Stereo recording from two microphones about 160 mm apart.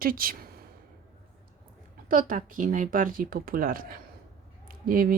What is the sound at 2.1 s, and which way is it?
Speech, 55° right (ahead or behind).